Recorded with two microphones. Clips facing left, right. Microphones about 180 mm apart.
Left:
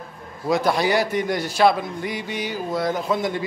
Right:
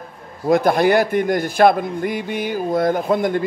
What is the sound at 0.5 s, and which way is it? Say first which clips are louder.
A man's voice: right 5 dB; 55° right (ahead or behind).